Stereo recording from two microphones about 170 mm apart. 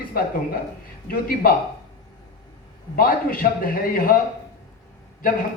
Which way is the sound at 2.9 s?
60° left (ahead or behind).